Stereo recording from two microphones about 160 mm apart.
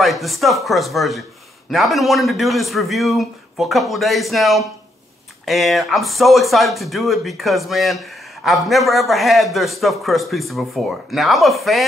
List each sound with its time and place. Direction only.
0.0 s speech: centre (ahead or behind)